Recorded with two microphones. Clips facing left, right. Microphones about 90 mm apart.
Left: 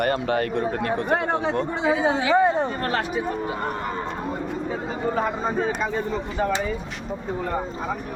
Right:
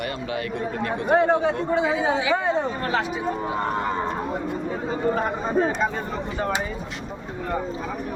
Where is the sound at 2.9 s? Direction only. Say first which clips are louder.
Even; 50° left (ahead or behind).